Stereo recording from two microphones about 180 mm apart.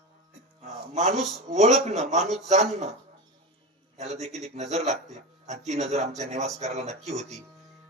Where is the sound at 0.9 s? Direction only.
40° right (ahead or behind).